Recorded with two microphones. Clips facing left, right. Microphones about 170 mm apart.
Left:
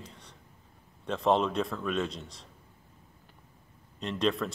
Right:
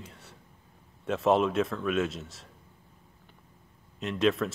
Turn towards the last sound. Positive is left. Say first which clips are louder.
# right 3 dB
turn(degrees=0)  # may be behind; listen again after turning